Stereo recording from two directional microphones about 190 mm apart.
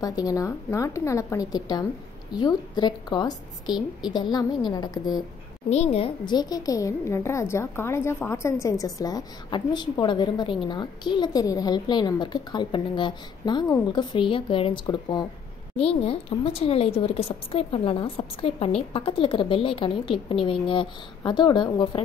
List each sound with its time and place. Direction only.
0.0 s a woman's voice: 20° left (ahead or behind)
5.7 s speech: 35° left (ahead or behind)